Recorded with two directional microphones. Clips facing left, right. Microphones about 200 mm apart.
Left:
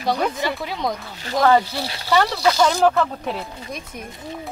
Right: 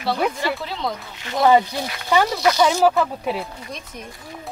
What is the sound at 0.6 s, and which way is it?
Speech, 15° left (ahead or behind).